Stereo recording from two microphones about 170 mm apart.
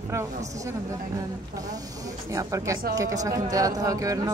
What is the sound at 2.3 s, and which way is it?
A man's voice, 20° right (ahead or behind).